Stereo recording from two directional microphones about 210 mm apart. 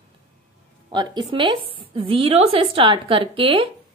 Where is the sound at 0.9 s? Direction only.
20° right (ahead or behind).